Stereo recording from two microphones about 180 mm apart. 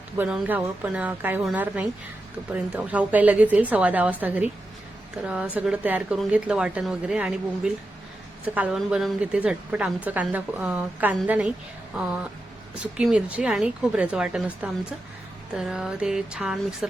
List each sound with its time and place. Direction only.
0.2 s a woman's voice: 10° right (ahead or behind)
5.2 s a woman's voice: 5° right (ahead or behind)